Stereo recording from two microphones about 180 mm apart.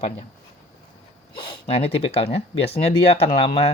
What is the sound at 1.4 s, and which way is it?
Speech, 30° left (ahead or behind).